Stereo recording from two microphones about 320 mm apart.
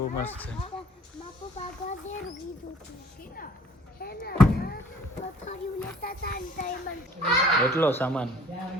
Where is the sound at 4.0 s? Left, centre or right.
Left.